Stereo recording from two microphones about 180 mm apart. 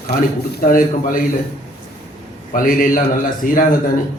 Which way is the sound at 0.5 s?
50° left (ahead or behind).